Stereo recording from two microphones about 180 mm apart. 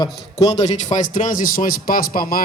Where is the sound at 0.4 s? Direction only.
40° left (ahead or behind).